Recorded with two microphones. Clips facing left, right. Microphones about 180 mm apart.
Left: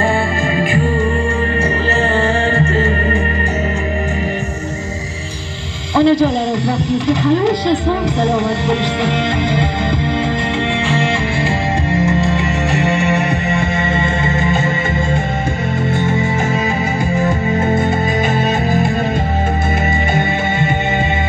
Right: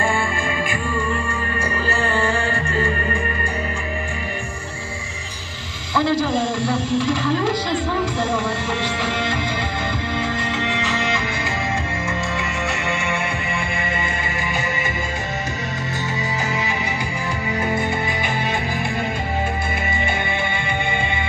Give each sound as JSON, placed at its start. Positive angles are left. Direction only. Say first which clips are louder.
{"t": 0.6, "sound": "music", "louder": "left 9 dB", "side_deg": 35}
{"t": 2.0, "sound": "music", "louder": "left 5 dB", "side_deg": 35}
{"t": 5.9, "sound": "music", "louder": "left 7 dB", "side_deg": 20}
{"t": 13.5, "sound": "music", "louder": "left 8 dB", "side_deg": 25}
{"t": 17.1, "sound": "music", "louder": "left 9 dB", "side_deg": 25}